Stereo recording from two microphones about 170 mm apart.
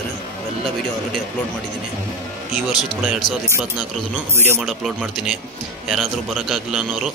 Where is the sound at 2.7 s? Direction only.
Centre (ahead or behind).